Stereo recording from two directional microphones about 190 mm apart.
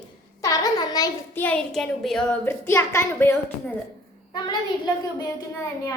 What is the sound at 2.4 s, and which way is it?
A child's voice, 15° left (ahead or behind).